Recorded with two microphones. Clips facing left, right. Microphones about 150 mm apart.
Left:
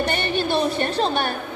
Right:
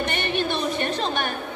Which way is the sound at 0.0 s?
35° left (ahead or behind).